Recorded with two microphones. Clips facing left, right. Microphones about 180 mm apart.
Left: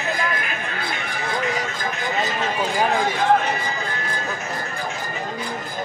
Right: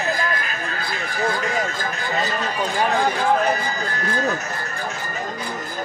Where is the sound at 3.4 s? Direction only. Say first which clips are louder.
Right 4 dB; 40° right (ahead or behind).